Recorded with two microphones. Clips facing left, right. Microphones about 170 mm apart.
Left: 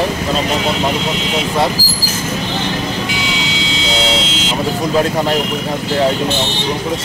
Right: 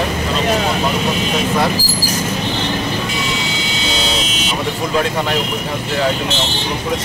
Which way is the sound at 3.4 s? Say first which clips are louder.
Left 2 dB; 90° left.